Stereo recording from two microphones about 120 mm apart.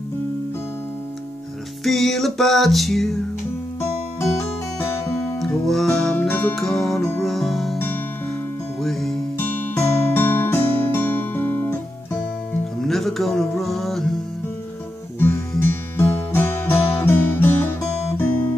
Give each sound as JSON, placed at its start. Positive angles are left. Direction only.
{"t": 1.9, "sound": "music", "side_deg": 0}
{"t": 5.7, "sound": "music", "side_deg": 5}
{"t": 6.5, "sound": "music", "side_deg": 0}
{"t": 7.0, "sound": "music", "side_deg": 20}
{"t": 7.2, "sound": "music", "side_deg": 0}
{"t": 8.8, "sound": "music", "side_deg": 5}
{"t": 9.4, "sound": "music", "side_deg": 20}
{"t": 12.8, "sound": "music", "side_deg": 0}
{"t": 15.1, "sound": "guitar", "side_deg": 20}
{"t": 15.6, "sound": "music", "side_deg": 20}